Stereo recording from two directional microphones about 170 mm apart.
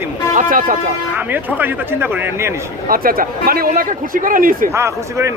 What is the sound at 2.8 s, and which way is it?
A man's voice, 60° right (ahead or behind).